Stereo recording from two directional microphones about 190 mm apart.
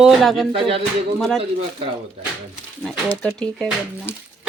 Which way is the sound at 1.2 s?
Centre (ahead or behind).